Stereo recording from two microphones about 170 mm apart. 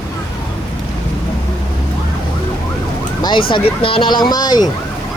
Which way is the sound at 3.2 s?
30° left (ahead or behind).